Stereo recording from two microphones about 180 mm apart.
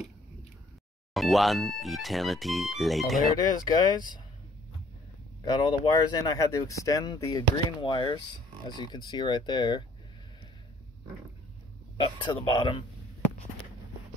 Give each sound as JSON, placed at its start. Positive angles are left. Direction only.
{"t": 1.1, "sound": "speech", "side_deg": 0}
{"t": 3.3, "sound": "speech", "side_deg": 20}
{"t": 5.4, "sound": "speech", "side_deg": 25}
{"t": 12.0, "sound": "speech", "side_deg": 25}